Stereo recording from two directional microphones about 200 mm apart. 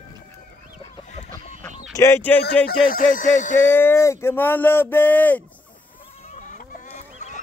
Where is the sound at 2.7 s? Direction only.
45° left (ahead or behind).